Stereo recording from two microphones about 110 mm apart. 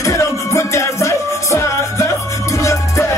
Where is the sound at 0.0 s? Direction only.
30° left (ahead or behind).